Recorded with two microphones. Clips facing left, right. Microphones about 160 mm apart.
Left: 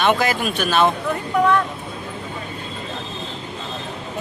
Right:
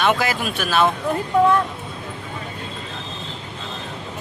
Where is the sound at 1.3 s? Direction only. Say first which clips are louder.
Right 2 dB; 30° right (ahead or behind).